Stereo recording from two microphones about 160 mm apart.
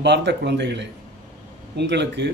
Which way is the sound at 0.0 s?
90° right.